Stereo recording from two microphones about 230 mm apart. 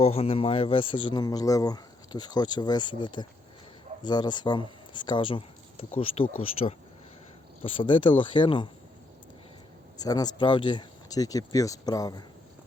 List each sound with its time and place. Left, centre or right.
0.0 s speech: left
7.6 s speech: left
10.0 s speech: centre